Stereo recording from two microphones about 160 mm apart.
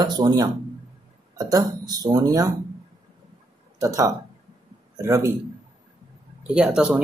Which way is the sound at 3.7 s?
20° right (ahead or behind).